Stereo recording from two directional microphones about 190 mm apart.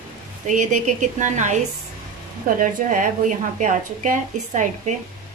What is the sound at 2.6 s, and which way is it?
A woman's voice, 45° right (ahead or behind).